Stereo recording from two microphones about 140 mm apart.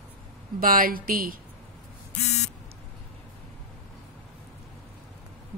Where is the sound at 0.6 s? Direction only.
90° right.